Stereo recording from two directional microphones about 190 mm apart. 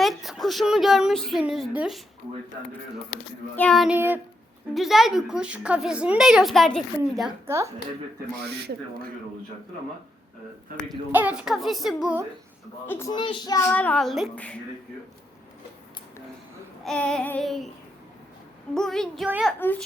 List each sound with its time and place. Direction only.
0.0 s speech: centre (ahead or behind)
3.5 s a woman's voice: 5° left (ahead or behind)
3.9 s a woman's voice: 10° right (ahead or behind)
7.4 s speech: 15° right (ahead or behind)
8.4 s speech: 55° right (ahead or behind)
11.1 s a woman's voice: 10° right (ahead or behind)
12.9 s child singing: 15° left (ahead or behind)
13.7 s a woman's voice: 5° left (ahead or behind)
16.8 s a woman's voice: 5° left (ahead or behind)
18.7 s a woman's voice: centre (ahead or behind)
19.5 s a woman's voice: 10° left (ahead or behind)